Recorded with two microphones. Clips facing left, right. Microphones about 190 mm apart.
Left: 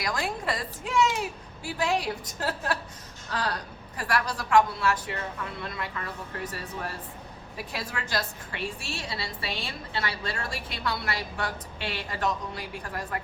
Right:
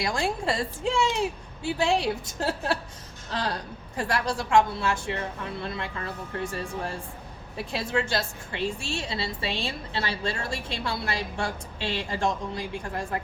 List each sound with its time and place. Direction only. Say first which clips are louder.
0.0 s a woman's voice: right 3 dB; 25° right (ahead or behind)